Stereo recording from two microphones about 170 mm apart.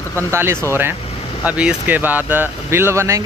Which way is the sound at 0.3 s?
15° right (ahead or behind).